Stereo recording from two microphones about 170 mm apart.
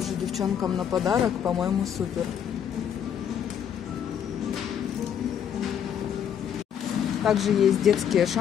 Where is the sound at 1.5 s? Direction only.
Centre (ahead or behind).